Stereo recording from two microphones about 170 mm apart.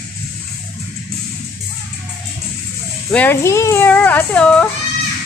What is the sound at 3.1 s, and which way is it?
Speech, 10° left (ahead or behind).